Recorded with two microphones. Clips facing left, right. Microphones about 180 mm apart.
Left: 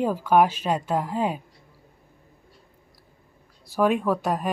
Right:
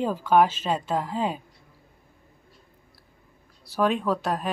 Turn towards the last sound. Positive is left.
turn(degrees=10)  # may be behind; listen again after turning